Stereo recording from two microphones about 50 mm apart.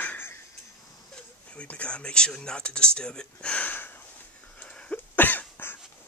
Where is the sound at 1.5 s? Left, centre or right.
Left.